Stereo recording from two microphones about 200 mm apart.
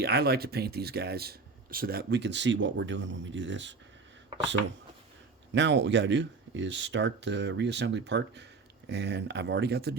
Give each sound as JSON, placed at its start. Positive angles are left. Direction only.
{"t": 0.0, "sound": "speech", "side_deg": -50}
{"t": 5.5, "sound": "speech", "side_deg": -65}